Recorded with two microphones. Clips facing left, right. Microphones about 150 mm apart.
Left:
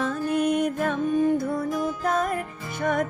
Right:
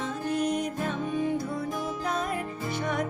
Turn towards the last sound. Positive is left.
turn(degrees=50)  # may be behind; listen again after turning